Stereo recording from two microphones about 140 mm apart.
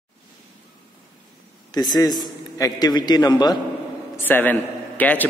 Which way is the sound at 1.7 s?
30° left (ahead or behind).